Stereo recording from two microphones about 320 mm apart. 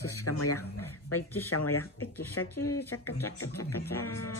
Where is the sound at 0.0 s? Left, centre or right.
Left.